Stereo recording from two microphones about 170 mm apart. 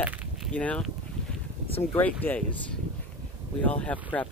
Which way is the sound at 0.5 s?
5° left (ahead or behind).